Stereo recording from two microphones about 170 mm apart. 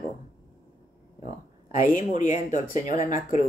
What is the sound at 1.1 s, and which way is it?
Speech, 45° left (ahead or behind).